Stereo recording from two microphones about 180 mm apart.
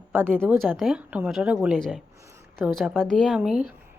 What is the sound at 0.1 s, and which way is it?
A woman's voice, 10° right (ahead or behind).